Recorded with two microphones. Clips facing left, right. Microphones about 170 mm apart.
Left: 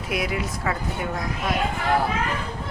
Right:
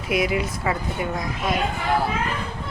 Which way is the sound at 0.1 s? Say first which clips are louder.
Right 4 dB; centre (ahead or behind).